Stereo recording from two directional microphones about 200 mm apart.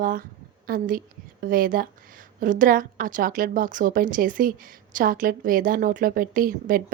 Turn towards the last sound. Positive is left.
turn(degrees=-45)  # may be behind; listen again after turning